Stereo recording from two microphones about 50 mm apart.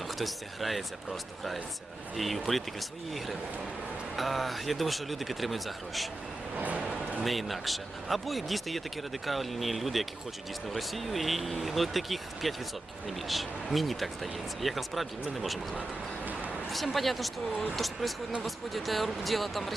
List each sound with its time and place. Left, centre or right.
0.2 s speech: centre
4.2 s speech: centre
6.7 s a sound: right
7.3 s speech: centre
13.7 s speech: centre
16.6 s speech: centre